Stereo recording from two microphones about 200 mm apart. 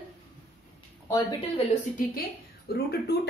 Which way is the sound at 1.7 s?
40° left (ahead or behind).